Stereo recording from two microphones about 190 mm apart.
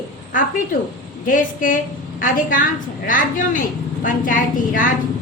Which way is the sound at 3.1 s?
45° left (ahead or behind).